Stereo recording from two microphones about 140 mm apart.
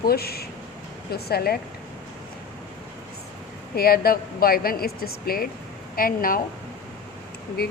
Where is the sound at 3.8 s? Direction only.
90° left.